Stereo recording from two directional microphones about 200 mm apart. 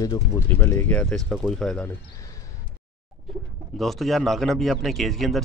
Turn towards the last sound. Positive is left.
turn(degrees=0)  # may be behind; listen again after turning